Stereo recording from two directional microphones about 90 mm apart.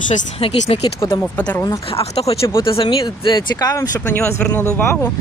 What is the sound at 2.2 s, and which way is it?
Speech, 90° left.